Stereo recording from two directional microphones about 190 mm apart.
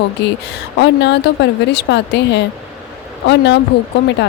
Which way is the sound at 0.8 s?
65° left (ahead or behind).